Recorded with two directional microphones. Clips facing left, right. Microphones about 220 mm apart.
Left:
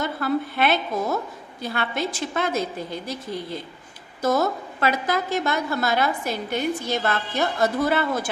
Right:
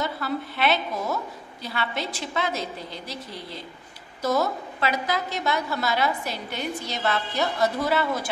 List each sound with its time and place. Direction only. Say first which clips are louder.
0.0 s a woman's voice: left 4 dB; 50° left (ahead or behind)